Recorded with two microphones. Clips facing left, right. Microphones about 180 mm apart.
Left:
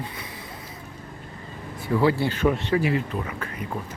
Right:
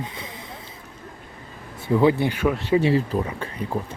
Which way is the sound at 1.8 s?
20° right (ahead or behind).